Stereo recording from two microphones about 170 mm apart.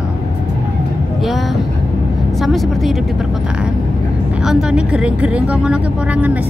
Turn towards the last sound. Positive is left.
turn(degrees=-10)  # may be behind; listen again after turning